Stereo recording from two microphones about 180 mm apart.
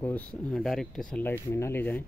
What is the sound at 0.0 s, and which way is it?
Speech, 5° left (ahead or behind).